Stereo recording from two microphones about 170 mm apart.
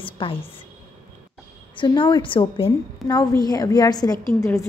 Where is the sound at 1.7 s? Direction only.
30° left (ahead or behind).